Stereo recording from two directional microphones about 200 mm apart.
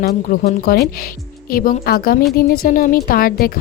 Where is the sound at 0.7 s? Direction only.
50° left (ahead or behind).